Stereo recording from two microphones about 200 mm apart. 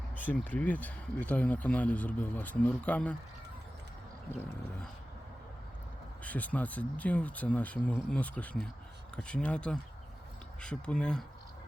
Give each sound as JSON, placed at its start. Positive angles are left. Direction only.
{"t": 0.2, "sound": "speech", "side_deg": 10}
{"t": 6.2, "sound": "speech", "side_deg": 10}